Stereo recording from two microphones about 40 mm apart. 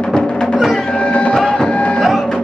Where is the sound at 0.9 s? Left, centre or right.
Left.